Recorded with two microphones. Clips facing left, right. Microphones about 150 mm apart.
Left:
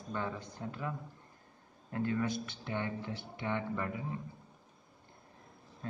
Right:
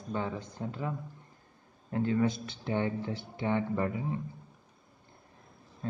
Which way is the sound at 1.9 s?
25° right (ahead or behind).